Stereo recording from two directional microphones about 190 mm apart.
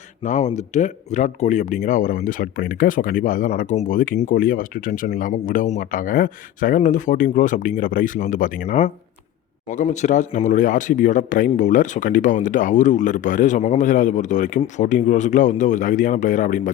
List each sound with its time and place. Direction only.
0.2 s speech: 40° left (ahead or behind)